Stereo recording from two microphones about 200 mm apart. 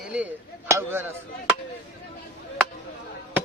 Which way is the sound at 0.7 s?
10° right (ahead or behind).